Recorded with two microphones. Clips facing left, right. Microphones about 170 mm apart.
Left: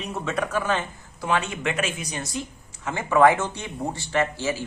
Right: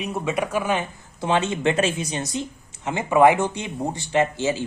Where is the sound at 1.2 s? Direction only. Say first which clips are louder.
Right 4 dB; 25° right (ahead or behind).